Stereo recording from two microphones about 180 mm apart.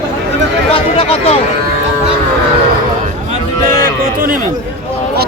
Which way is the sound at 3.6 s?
50° right (ahead or behind).